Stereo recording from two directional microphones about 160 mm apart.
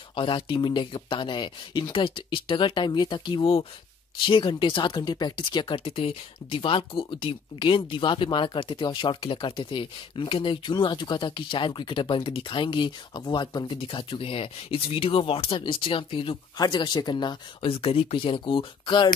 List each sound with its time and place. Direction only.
0.1 s speech: 30° left (ahead or behind)